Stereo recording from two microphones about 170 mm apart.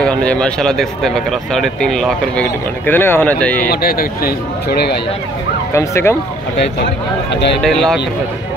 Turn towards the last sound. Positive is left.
turn(degrees=0)  # may be behind; listen again after turning